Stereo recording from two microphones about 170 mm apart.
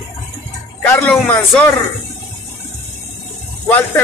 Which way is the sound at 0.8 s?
10° left (ahead or behind).